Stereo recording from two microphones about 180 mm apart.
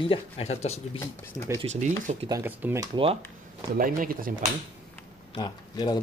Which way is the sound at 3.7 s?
50° right (ahead or behind).